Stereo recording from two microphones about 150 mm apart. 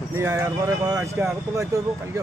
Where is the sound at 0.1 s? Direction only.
15° right (ahead or behind).